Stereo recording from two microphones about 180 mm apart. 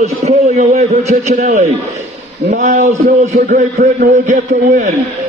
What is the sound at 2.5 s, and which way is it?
A man's voice, 45° right (ahead or behind).